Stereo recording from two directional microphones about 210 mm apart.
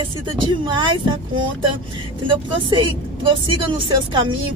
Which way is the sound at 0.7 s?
20° right (ahead or behind).